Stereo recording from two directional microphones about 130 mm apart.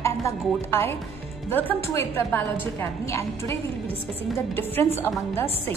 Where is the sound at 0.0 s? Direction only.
20° left (ahead or behind).